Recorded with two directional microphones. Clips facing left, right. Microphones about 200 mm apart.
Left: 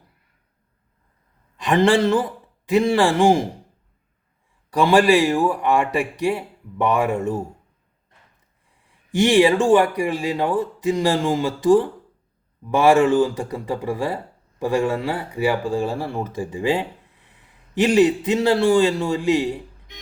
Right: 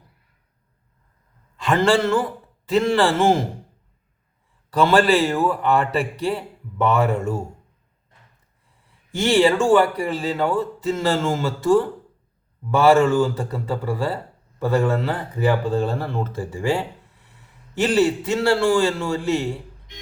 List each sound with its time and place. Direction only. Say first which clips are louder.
1.5 s a man's voice: left 2 dB; 20° left (ahead or behind)
4.7 s speech: left 1 dB; 15° left (ahead or behind)
9.1 s speech: left 2 dB; 15° left (ahead or behind)